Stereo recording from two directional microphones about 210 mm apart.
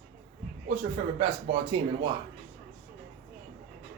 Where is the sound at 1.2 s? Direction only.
25° right (ahead or behind).